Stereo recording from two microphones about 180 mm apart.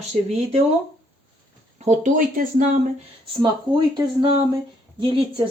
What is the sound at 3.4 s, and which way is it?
Speech, 25° right (ahead or behind).